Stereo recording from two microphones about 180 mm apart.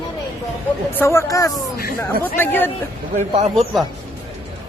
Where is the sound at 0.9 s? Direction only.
15° left (ahead or behind).